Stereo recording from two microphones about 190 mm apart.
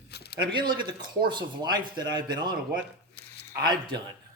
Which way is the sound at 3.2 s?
60° left (ahead or behind).